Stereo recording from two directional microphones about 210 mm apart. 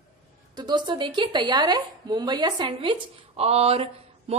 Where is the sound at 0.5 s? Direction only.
20° right (ahead or behind).